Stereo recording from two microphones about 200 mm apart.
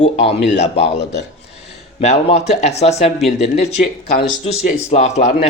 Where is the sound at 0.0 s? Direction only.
30° left (ahead or behind).